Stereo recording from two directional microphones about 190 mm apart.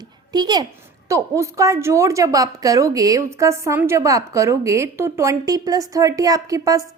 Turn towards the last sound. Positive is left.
turn(degrees=-15)  # may be behind; listen again after turning